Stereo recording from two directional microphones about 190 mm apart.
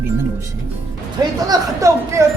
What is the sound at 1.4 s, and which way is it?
Speech, 15° right (ahead or behind).